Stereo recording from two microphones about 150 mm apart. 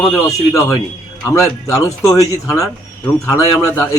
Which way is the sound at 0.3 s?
20° left (ahead or behind).